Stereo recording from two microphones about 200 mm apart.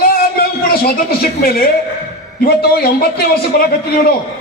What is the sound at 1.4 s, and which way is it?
A man's voice, 50° left (ahead or behind).